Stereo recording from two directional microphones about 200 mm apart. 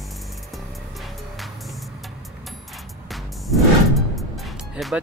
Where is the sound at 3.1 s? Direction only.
Centre (ahead or behind).